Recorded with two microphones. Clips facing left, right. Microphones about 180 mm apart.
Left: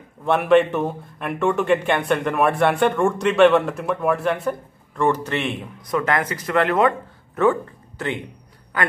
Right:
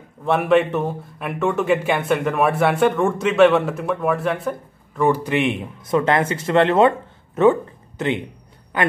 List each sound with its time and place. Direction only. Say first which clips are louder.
0.2 s speech: left 1 dB; centre (ahead or behind); by 8.9 s 20° right (ahead or behind)